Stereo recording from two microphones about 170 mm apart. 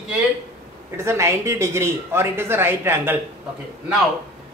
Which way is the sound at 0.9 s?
15° right (ahead or behind).